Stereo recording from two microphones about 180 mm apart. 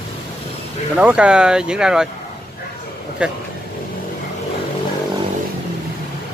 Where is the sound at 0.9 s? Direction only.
5° right (ahead or behind).